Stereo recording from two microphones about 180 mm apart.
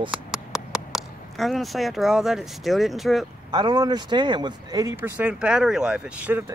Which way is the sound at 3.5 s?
25° right (ahead or behind).